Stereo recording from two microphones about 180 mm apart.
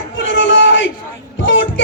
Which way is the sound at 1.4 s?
90° left.